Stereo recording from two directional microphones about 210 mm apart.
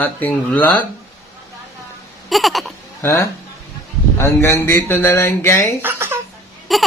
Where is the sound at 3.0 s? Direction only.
15° left (ahead or behind).